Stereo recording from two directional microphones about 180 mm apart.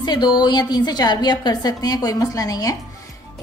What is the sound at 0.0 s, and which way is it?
A woman's voice, 25° left (ahead or behind).